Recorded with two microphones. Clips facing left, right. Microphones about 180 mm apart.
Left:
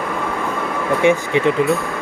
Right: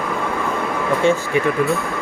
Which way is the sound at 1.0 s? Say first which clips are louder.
Left 3 dB; 20° left (ahead or behind).